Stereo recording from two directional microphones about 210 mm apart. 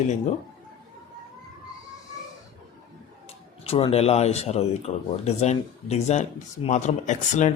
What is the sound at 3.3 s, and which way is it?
Speech, 25° left (ahead or behind).